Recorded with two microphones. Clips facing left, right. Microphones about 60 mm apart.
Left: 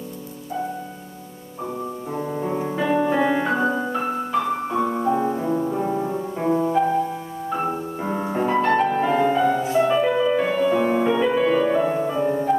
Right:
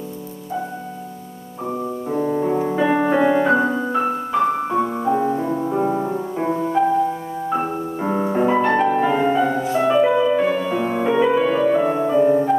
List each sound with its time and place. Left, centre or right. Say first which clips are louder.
2.0 s music: right 7 dB; centre
6.8 s music: right 5 dB; centre
7.4 s music: right 2 dB; centre
11.1 s music: right 2 dB; centre